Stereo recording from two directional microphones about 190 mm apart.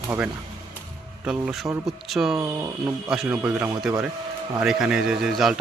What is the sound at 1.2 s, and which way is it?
Speech, 5° right (ahead or behind).